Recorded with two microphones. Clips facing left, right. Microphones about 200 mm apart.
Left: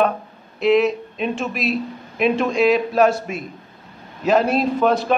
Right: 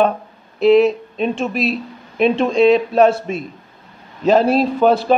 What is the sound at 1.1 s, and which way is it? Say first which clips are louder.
A woman's voice: right 4 dB; 35° right (ahead or behind).